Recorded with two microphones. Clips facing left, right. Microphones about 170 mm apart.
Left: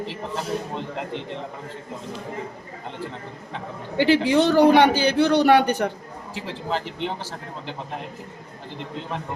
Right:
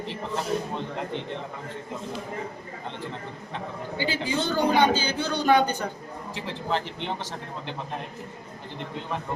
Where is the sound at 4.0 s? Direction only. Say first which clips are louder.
Left 10 dB; 75° left (ahead or behind).